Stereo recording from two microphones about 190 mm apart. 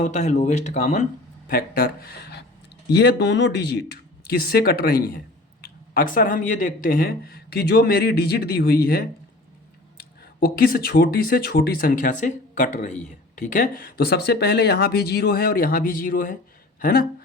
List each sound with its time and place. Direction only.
0.0 s speech: 40° left (ahead or behind)
1.5 s speech: 50° left (ahead or behind)
10.4 s speech: 55° left (ahead or behind)